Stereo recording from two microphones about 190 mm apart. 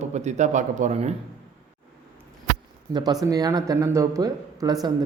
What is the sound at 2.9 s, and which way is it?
Speech, 20° right (ahead or behind).